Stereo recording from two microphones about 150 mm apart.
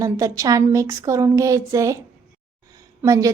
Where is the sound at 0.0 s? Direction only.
20° right (ahead or behind).